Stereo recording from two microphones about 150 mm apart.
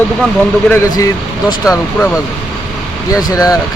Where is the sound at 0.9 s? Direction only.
25° left (ahead or behind).